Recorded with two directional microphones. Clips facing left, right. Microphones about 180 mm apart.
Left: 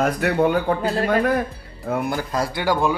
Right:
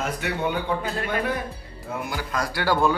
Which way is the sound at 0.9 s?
40° left (ahead or behind).